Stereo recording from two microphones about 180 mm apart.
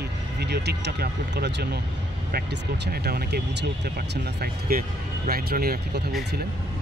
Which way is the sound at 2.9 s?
60° right (ahead or behind).